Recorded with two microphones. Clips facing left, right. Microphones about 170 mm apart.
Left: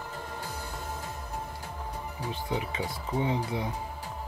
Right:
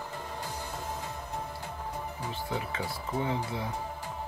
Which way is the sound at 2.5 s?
15° left (ahead or behind).